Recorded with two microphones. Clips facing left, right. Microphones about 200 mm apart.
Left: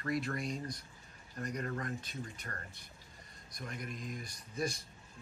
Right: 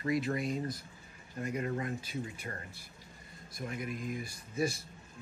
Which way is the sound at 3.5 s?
5° right (ahead or behind).